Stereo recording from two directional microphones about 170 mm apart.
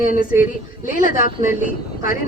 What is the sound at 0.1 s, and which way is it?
A woman's voice, 50° left (ahead or behind).